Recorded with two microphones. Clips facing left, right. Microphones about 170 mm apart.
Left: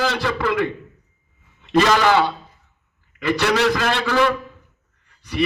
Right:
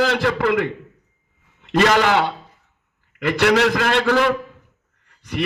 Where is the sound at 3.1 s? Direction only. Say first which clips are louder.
Right 2 dB; 65° right (ahead or behind).